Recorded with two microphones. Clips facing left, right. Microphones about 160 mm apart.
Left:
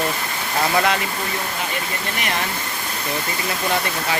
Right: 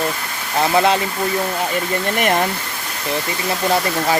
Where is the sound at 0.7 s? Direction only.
30° right (ahead or behind).